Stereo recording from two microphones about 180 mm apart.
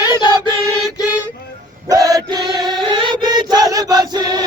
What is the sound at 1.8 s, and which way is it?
Chant, 20° right (ahead or behind).